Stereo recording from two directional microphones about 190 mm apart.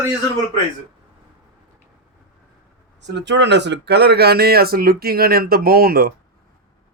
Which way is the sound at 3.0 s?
65° right (ahead or behind).